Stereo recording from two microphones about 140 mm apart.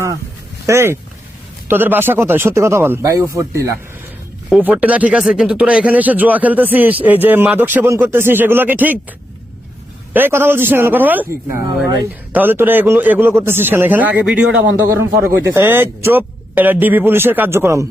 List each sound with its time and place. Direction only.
0.7 s speech: 15° right (ahead or behind)
4.6 s speech: 10° right (ahead or behind)
10.1 s speech: 15° right (ahead or behind)
14.6 s speech: 20° right (ahead or behind)